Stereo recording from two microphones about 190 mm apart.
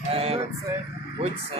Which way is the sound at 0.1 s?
30° right (ahead or behind).